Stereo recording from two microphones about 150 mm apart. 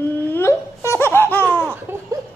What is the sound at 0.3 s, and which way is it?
Laughter, 15° left (ahead or behind).